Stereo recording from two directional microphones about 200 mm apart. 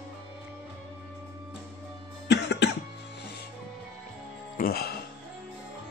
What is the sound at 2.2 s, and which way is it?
Cough, 60° left (ahead or behind).